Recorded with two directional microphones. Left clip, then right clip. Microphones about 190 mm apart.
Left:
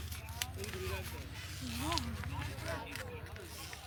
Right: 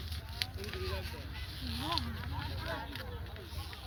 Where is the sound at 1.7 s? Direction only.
10° right (ahead or behind).